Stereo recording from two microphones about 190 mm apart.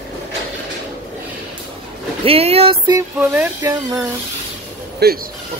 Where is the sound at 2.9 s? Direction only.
10° right (ahead or behind).